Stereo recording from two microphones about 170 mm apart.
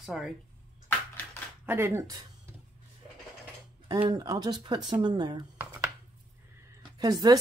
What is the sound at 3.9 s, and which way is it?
Speech, 25° right (ahead or behind).